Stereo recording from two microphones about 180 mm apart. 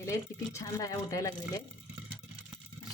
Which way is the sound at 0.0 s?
15° left (ahead or behind).